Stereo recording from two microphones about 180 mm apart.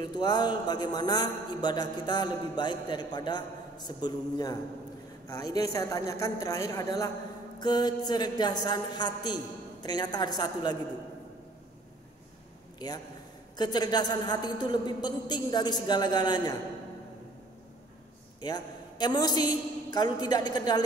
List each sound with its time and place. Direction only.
0.0 s a man's voice: 25° left (ahead or behind)
12.7 s a man's voice: 20° left (ahead or behind)
18.4 s a man's voice: 20° left (ahead or behind)